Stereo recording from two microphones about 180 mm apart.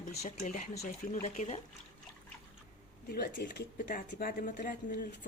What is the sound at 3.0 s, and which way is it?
Speech, 60° left (ahead or behind).